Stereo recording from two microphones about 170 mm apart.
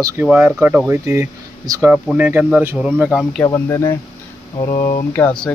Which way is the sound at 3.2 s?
5° left (ahead or behind).